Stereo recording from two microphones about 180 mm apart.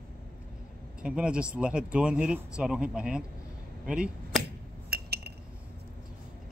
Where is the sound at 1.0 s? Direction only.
5° right (ahead or behind).